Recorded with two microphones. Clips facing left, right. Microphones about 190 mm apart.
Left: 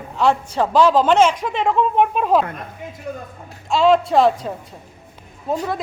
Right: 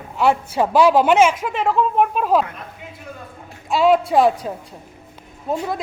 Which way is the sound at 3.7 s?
5° right (ahead or behind).